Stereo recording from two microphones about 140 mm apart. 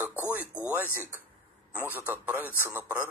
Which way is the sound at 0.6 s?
15° right (ahead or behind).